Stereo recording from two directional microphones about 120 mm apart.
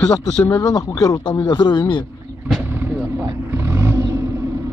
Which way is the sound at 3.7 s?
20° right (ahead or behind).